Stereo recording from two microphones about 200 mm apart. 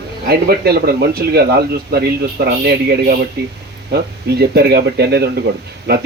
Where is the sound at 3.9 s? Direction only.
55° right (ahead or behind).